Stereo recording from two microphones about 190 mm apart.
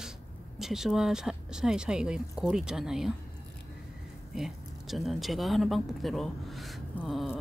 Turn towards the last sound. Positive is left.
turn(degrees=0)  # may be behind; listen again after turning